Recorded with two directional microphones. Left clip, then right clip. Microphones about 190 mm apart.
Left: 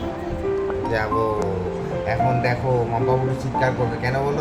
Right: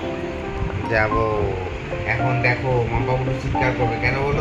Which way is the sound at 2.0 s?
15° right (ahead or behind).